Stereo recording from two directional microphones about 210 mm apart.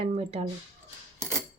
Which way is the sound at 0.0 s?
30° right (ahead or behind).